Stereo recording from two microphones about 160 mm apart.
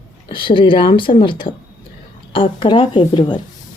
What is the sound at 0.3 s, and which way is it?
A woman's voice, 30° left (ahead or behind).